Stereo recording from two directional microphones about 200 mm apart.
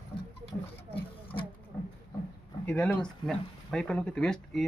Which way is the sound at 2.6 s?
5° left (ahead or behind).